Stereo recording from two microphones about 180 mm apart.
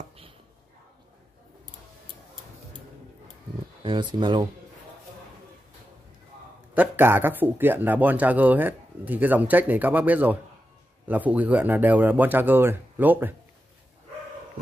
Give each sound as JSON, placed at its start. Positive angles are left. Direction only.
{"t": 3.8, "sound": "speech", "side_deg": -25}
{"t": 6.7, "sound": "speech", "side_deg": -10}